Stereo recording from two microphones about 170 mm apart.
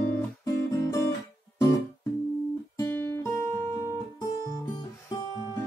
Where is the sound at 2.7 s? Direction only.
15° left (ahead or behind).